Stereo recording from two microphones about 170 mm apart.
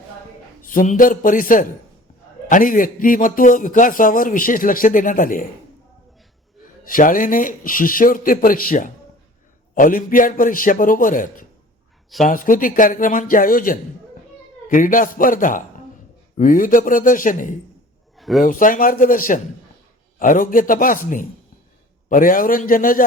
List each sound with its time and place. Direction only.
0.6 s speech: 55° left (ahead or behind)
6.8 s speech: 55° left (ahead or behind)
18.2 s a sound: centre (ahead or behind)
18.4 s speech: 50° left (ahead or behind)